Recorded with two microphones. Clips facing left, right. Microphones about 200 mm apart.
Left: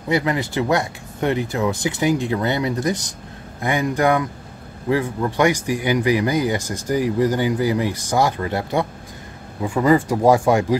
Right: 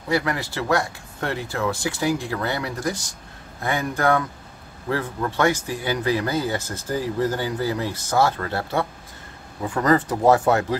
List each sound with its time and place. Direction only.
0.1 s speech: 20° left (ahead or behind)